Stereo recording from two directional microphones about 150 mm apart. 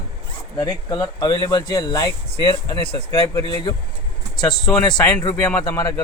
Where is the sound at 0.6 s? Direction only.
25° left (ahead or behind).